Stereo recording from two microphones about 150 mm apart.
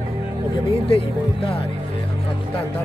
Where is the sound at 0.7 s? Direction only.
40° left (ahead or behind).